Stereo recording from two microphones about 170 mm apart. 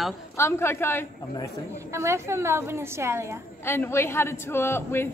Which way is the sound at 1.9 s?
15° right (ahead or behind).